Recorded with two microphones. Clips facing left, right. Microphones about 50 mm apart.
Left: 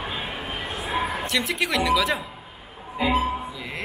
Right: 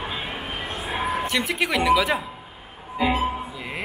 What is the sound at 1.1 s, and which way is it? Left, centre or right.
Speech, centre.